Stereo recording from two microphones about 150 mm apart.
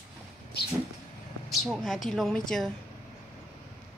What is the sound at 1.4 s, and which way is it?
A woman's voice, centre (ahead or behind).